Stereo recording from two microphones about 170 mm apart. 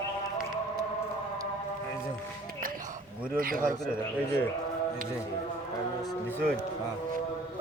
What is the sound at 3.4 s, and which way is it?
Speech, 55° right (ahead or behind).